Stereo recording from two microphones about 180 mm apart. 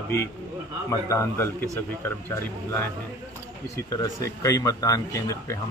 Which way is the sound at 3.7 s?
20° left (ahead or behind).